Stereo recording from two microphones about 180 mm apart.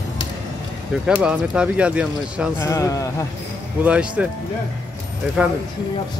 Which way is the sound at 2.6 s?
15° left (ahead or behind).